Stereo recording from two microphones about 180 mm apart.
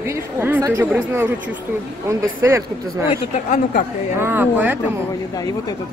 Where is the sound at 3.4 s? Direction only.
45° left (ahead or behind).